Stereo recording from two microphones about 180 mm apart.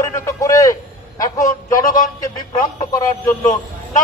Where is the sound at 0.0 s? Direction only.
15° left (ahead or behind).